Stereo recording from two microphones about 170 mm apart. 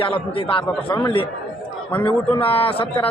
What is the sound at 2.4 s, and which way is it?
Speech, 35° left (ahead or behind).